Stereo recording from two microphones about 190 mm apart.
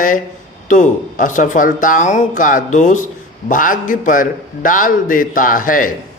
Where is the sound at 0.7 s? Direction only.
45° left (ahead or behind).